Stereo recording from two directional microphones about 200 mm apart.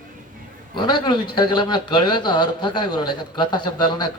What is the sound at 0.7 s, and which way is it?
A man's voice, 20° left (ahead or behind).